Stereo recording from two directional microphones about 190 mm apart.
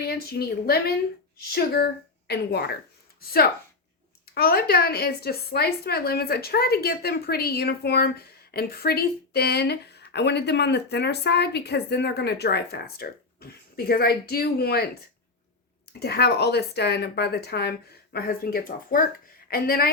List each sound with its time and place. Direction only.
0.0 s a woman's voice: 55° left (ahead or behind)
15.9 s a woman's voice: 55° left (ahead or behind)